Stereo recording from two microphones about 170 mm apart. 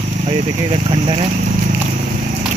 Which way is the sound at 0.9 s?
35° right (ahead or behind).